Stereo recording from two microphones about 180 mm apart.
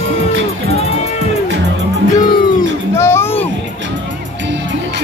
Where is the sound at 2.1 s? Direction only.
25° left (ahead or behind).